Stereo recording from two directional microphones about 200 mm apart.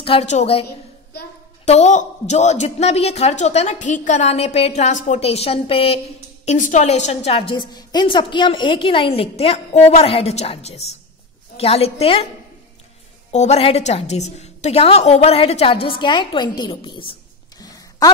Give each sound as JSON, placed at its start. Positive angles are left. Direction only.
{"t": 0.0, "sound": "a woman's voice", "side_deg": 30}
{"t": 1.7, "sound": "a woman's voice", "side_deg": 35}
{"t": 13.3, "sound": "a woman's voice", "side_deg": 35}
{"t": 17.6, "sound": "a sound", "side_deg": 20}